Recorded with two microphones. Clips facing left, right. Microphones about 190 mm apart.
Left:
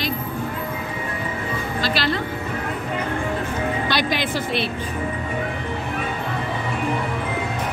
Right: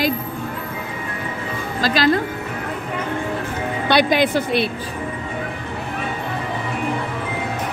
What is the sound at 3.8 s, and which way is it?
Speech, 55° right (ahead or behind).